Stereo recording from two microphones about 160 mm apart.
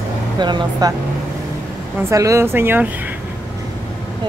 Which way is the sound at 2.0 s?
20° right (ahead or behind).